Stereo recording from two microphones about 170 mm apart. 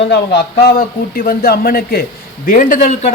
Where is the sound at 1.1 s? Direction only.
60° left (ahead or behind).